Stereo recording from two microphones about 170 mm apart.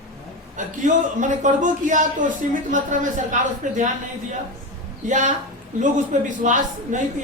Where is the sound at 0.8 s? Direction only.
45° right (ahead or behind).